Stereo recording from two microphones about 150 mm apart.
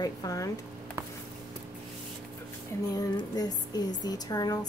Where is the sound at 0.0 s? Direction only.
25° left (ahead or behind).